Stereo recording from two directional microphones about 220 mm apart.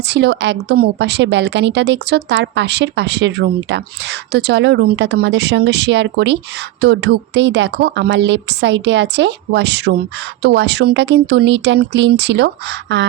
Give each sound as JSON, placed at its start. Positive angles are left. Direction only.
{"t": 0.0, "sound": "a woman's voice", "side_deg": -50}